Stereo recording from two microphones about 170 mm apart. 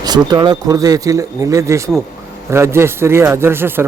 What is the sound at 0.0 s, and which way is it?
Speech, 25° right (ahead or behind).